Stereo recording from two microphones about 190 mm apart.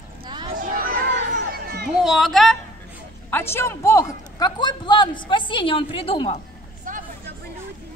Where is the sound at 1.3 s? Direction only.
55° right (ahead or behind).